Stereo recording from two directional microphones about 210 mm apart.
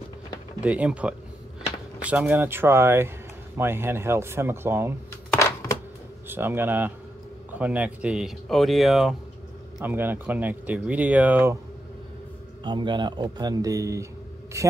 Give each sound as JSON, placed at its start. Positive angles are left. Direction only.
{"t": 0.6, "sound": "speech", "side_deg": -5}
{"t": 6.2, "sound": "speech", "side_deg": -10}
{"t": 12.6, "sound": "speech", "side_deg": -20}